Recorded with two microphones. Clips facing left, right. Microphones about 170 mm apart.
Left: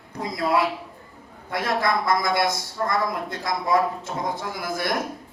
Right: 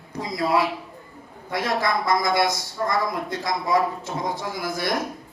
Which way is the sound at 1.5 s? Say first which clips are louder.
Even; 55° left (ahead or behind).